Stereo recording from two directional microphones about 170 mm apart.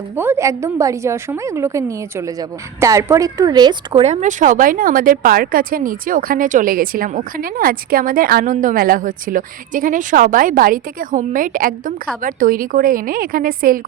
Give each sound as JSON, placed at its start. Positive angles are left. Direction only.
{"t": 0.2, "sound": "a woman's voice", "side_deg": -15}
{"t": 4.0, "sound": "a woman's voice", "side_deg": -45}